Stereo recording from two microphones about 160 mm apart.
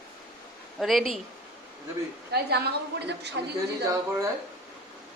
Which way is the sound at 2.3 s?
90° right.